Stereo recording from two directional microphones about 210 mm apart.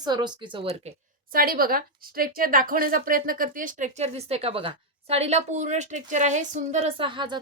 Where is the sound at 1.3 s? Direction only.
45° right (ahead or behind).